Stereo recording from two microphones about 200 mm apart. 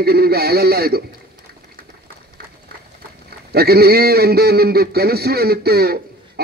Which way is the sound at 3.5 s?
50° right (ahead or behind).